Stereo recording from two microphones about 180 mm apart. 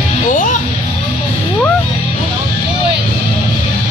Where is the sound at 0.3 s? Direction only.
45° left (ahead or behind).